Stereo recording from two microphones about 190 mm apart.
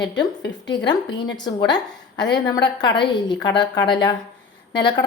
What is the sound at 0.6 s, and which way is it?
Speech, 20° left (ahead or behind).